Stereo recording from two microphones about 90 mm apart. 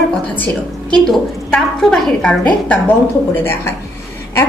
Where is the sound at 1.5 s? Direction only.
5° left (ahead or behind).